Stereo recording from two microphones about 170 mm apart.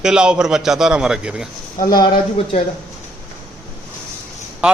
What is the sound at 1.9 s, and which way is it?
Speech, 30° left (ahead or behind).